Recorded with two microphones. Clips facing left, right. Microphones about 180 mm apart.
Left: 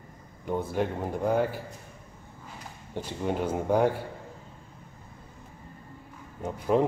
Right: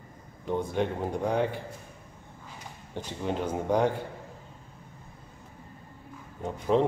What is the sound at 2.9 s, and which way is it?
Speech, 10° left (ahead or behind).